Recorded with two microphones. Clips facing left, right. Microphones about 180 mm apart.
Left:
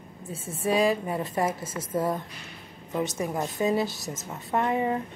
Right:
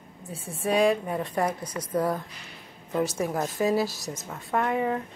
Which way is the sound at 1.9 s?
Centre (ahead or behind).